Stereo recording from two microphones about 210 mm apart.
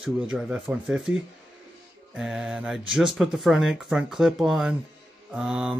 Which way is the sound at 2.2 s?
5° right (ahead or behind).